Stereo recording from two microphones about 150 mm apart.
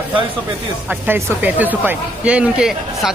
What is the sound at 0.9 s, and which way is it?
Speech, 10° right (ahead or behind).